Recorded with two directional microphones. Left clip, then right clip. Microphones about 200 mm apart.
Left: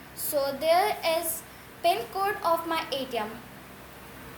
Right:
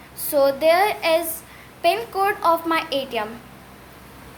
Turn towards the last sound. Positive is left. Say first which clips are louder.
# right 7 dB
turn(degrees=-45)  # may be behind; listen again after turning